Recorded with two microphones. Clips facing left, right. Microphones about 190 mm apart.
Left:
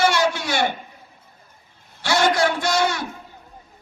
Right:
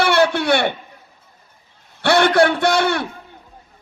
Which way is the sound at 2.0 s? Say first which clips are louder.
Right 5 dB; 60° right (ahead or behind).